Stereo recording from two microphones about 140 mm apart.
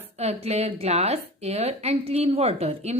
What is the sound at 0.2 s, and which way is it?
A woman's voice, 50° right (ahead or behind).